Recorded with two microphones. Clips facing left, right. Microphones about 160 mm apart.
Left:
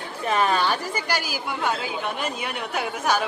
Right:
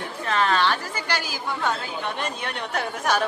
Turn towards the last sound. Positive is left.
turn(degrees=5)  # may be behind; listen again after turning